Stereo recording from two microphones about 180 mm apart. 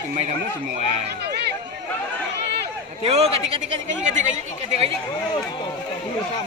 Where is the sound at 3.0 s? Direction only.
35° right (ahead or behind).